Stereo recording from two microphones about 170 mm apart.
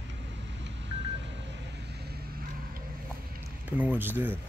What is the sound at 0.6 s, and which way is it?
Vehicle, 90° right.